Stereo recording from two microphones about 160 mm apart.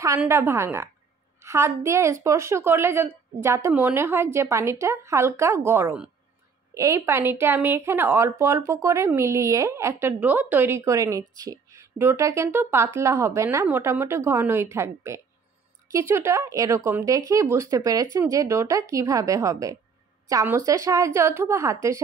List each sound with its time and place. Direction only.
0.2 s a woman's voice: 15° right (ahead or behind)